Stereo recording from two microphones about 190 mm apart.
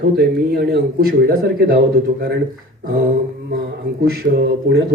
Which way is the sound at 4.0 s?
60° right (ahead or behind).